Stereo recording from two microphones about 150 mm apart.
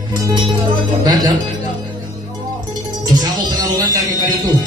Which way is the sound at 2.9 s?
25° right (ahead or behind).